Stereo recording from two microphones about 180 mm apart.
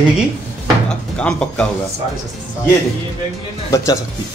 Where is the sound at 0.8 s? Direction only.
5° left (ahead or behind).